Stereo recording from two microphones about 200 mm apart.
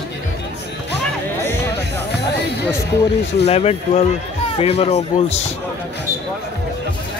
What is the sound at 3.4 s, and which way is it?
A man's voice, 30° left (ahead or behind).